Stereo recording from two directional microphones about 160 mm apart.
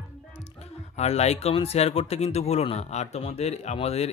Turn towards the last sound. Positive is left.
turn(degrees=40)  # may be behind; listen again after turning